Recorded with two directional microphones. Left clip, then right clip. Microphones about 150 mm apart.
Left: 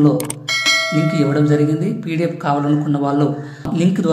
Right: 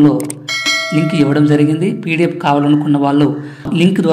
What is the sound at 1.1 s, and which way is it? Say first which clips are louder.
Speech: right 6 dB; 15° right (ahead or behind).